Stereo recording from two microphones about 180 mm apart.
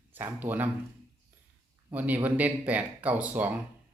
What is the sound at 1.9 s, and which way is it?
Speech, 10° right (ahead or behind).